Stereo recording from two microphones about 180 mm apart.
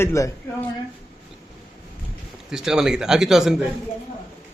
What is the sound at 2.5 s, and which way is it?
A man's voice, 5° right (ahead or behind).